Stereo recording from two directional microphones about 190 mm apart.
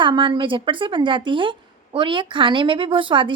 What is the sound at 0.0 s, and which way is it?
Speech, 25° right (ahead or behind).